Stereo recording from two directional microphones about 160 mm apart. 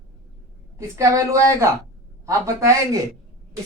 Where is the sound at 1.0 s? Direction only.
20° right (ahead or behind).